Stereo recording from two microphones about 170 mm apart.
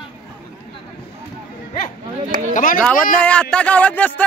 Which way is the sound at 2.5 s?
50° left (ahead or behind).